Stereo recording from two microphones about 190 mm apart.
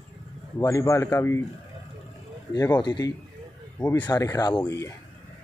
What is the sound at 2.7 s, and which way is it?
Speech, 20° left (ahead or behind).